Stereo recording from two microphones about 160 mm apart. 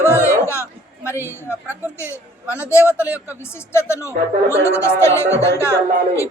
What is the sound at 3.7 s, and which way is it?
Speech, 15° left (ahead or behind).